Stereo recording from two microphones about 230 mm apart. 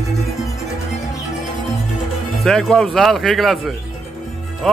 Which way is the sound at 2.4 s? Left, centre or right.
Centre.